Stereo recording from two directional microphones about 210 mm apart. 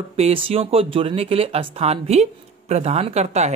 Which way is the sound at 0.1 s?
25° right (ahead or behind).